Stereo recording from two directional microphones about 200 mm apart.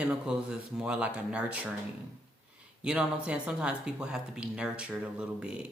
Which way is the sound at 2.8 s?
5° right (ahead or behind).